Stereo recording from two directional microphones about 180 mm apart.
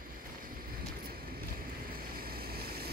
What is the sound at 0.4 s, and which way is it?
Vehicle, 50° right (ahead or behind).